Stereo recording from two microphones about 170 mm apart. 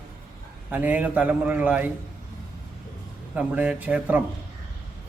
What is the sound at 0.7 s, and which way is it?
A man's voice, 10° right (ahead or behind).